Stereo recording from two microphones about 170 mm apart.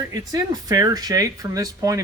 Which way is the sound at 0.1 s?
25° right (ahead or behind).